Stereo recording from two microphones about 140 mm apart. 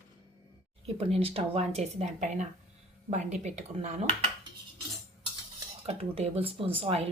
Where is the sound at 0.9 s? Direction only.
45° right (ahead or behind).